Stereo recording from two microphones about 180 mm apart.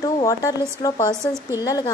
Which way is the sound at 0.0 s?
20° left (ahead or behind).